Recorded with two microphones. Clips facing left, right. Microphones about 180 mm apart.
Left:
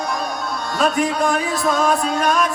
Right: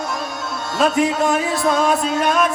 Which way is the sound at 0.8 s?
20° right (ahead or behind).